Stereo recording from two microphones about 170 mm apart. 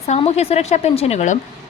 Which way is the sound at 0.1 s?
40° left (ahead or behind).